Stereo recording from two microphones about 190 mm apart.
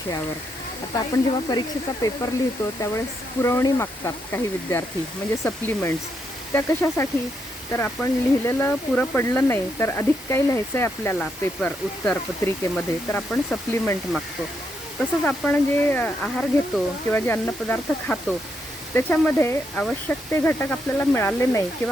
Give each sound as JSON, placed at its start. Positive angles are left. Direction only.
{"t": 0.9, "sound": "speech", "side_deg": 20}
{"t": 3.4, "sound": "speech", "side_deg": 15}
{"t": 15.2, "sound": "speech", "side_deg": 10}